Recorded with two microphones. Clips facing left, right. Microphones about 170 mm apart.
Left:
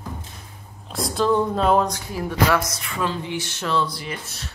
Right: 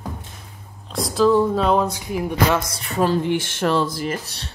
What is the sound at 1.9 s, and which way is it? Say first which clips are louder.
Speech: right 3 dB; 15° right (ahead or behind).